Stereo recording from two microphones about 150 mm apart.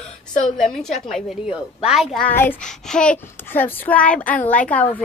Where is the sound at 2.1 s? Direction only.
10° left (ahead or behind).